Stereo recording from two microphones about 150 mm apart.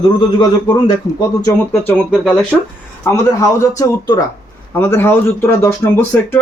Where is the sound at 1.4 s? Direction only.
15° left (ahead or behind).